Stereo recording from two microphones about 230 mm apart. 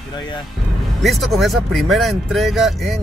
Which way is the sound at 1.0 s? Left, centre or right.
Centre.